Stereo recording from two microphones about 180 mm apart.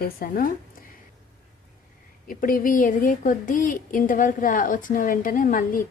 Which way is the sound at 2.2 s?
50° left (ahead or behind).